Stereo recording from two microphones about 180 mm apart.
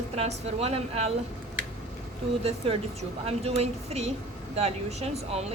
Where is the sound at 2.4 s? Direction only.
35° right (ahead or behind).